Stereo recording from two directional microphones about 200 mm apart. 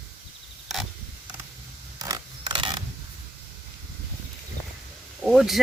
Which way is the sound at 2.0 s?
20° right (ahead or behind).